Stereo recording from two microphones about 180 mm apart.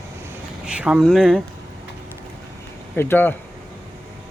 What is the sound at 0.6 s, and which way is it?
Speech, 5° right (ahead or behind).